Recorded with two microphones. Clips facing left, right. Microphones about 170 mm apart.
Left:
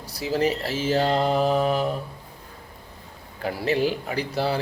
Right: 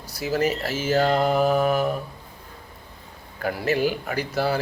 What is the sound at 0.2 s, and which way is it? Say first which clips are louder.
Speech: even; 30° left (ahead or behind).